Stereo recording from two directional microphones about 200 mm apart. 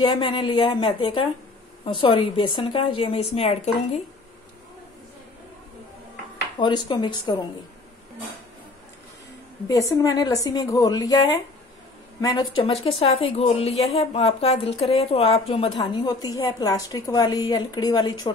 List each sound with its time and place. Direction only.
0.0 s speech: 25° left (ahead or behind)
6.6 s speech: 20° left (ahead or behind)
9.7 s speech: 15° left (ahead or behind)